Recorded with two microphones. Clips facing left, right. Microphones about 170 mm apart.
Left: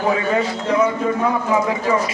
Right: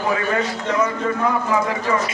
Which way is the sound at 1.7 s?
15° left (ahead or behind).